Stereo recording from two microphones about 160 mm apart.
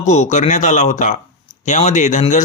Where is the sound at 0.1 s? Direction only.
45° left (ahead or behind).